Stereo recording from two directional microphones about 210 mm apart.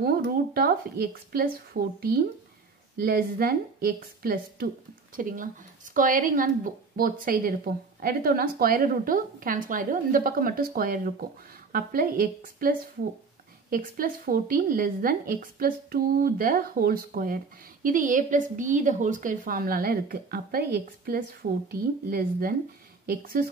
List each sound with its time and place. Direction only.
0.0 s a woman's voice: 45° right (ahead or behind)